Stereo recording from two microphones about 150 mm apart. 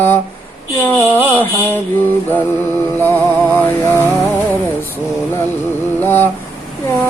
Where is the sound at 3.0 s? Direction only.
10° left (ahead or behind).